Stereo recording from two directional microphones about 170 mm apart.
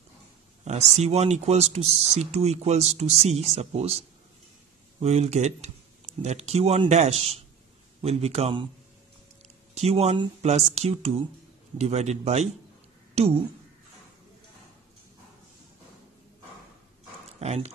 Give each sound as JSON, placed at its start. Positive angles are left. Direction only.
{"t": 0.7, "sound": "speech", "side_deg": -40}
{"t": 5.0, "sound": "speech", "side_deg": -40}
{"t": 9.8, "sound": "speech", "side_deg": -40}
{"t": 17.4, "sound": "speech", "side_deg": -40}